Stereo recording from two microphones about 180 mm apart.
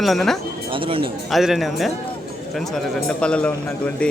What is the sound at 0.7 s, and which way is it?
Speech, 30° right (ahead or behind).